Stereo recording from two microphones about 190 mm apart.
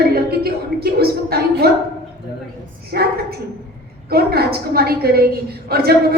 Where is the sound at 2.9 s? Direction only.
55° right (ahead or behind).